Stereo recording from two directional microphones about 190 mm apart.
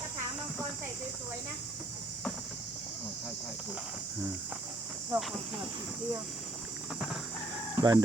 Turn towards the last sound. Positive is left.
turn(degrees=-10)  # may be behind; listen again after turning